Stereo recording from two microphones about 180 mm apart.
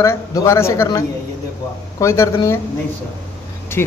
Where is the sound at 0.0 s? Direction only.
15° left (ahead or behind).